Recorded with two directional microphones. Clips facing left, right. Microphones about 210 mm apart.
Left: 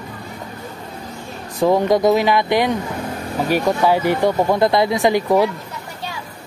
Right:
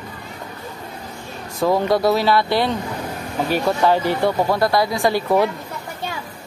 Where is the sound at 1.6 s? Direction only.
20° left (ahead or behind).